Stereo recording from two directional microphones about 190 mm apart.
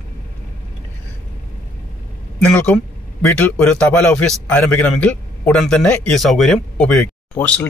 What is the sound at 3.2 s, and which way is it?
A man's voice, 10° left (ahead or behind).